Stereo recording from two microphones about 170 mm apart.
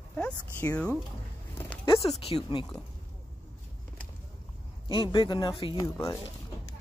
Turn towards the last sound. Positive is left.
turn(degrees=20)  # may be behind; listen again after turning